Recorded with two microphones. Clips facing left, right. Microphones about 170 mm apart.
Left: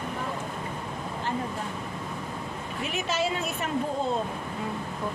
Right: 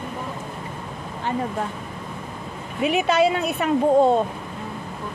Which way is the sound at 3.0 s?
65° right (ahead or behind).